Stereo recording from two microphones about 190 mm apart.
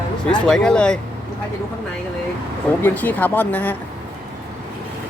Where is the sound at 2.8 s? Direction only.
10° left (ahead or behind).